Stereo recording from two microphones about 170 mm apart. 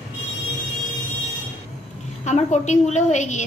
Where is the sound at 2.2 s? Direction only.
45° left (ahead or behind).